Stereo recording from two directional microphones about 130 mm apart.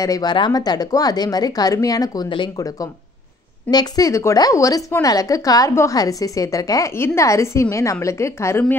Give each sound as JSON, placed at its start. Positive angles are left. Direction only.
{"t": 0.0, "sound": "speech", "side_deg": 30}
{"t": 3.7, "sound": "a woman's voice", "side_deg": 30}